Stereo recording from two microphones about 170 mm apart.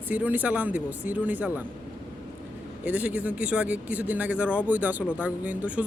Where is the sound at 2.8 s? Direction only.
5° right (ahead or behind).